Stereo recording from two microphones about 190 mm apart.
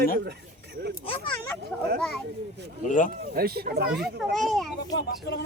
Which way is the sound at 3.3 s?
55° right (ahead or behind).